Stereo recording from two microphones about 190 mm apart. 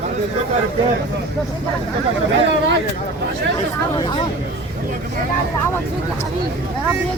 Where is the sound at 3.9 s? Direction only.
25° left (ahead or behind).